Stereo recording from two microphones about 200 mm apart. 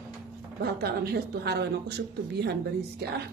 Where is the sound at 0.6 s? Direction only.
50° right (ahead or behind).